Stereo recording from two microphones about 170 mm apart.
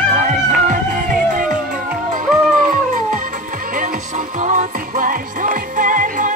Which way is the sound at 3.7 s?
50° right (ahead or behind).